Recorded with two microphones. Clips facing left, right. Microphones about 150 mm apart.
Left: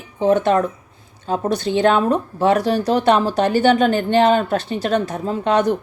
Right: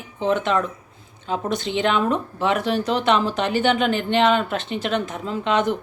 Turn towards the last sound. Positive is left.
turn(degrees=40)  # may be behind; listen again after turning